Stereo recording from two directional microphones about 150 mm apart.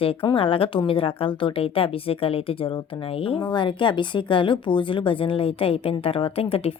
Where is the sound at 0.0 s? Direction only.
35° left (ahead or behind).